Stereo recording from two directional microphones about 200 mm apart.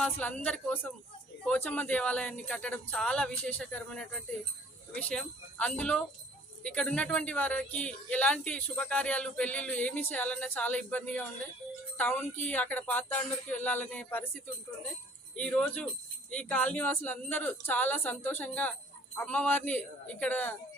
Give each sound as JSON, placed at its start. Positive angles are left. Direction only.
{"t": 0.0, "sound": "speech", "side_deg": 5}
{"t": 15.4, "sound": "speech", "side_deg": 5}